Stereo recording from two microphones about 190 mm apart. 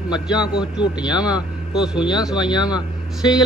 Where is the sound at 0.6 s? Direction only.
20° left (ahead or behind).